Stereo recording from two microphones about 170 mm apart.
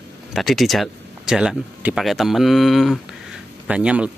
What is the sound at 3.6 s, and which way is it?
Speech, 5° right (ahead or behind).